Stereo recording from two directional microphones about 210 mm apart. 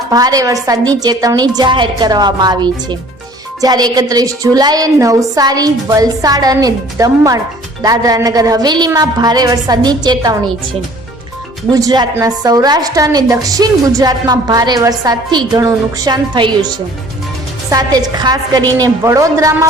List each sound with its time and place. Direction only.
0.1 s a woman's voice: 15° right (ahead or behind)
11.7 s a woman's voice: 15° right (ahead or behind)